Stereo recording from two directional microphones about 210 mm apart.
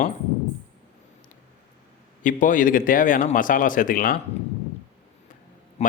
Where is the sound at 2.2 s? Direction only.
40° left (ahead or behind).